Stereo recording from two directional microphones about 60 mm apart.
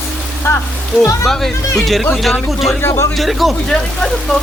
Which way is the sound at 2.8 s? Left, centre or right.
Left.